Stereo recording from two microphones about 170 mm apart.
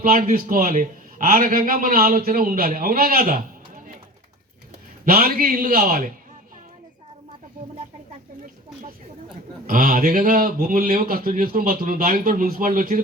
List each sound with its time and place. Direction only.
0.0 s a man's voice: 55° right (ahead or behind)
5.0 s a man's voice: 60° right (ahead or behind)
9.6 s a man's voice: 55° right (ahead or behind)